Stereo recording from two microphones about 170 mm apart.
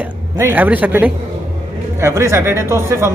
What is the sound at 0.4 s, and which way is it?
A woman's voice, 10° right (ahead or behind).